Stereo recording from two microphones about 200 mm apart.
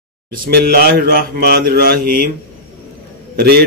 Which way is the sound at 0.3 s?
50° right (ahead or behind).